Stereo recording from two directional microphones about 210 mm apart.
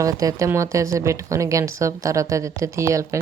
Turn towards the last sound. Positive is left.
turn(degrees=-15)  # may be behind; listen again after turning